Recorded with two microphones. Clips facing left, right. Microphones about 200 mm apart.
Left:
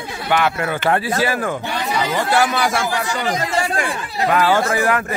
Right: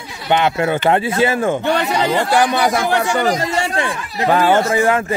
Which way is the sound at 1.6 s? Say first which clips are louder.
Right 7 dB; 70° right (ahead or behind).